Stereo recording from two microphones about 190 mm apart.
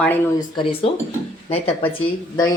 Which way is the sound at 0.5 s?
30° left (ahead or behind).